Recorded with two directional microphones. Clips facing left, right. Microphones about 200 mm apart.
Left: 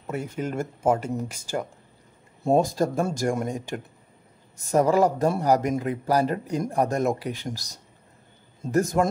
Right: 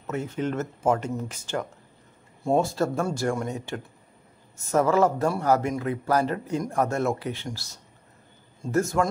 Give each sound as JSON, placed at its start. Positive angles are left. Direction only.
{"t": 0.0, "sound": "speech", "side_deg": 10}
{"t": 6.2, "sound": "a man's voice", "side_deg": 35}
{"t": 6.7, "sound": "speech", "side_deg": 15}